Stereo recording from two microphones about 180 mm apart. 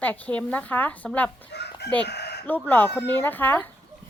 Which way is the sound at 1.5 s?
65° left (ahead or behind).